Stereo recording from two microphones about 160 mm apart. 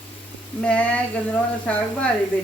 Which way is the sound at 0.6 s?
10° left (ahead or behind).